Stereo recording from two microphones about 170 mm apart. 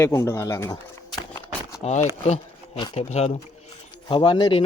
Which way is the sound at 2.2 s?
40° left (ahead or behind).